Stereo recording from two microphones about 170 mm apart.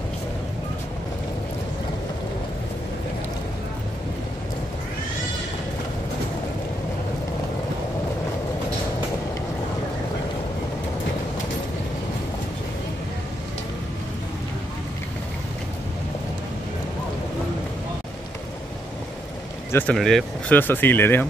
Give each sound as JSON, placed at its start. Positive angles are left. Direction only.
{"t": 19.7, "sound": "speech", "side_deg": 5}